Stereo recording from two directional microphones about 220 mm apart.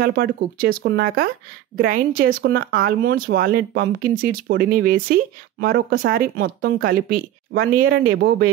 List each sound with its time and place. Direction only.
0.0 s speech: 45° right (ahead or behind)